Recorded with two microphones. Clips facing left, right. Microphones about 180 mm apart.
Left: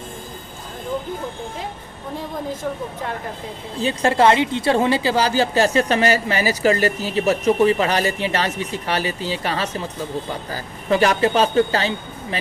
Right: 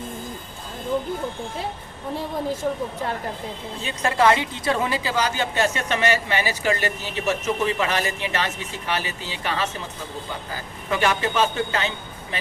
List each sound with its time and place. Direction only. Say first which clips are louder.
3.8 s a woman's voice: left 5 dB; 30° left (ahead or behind)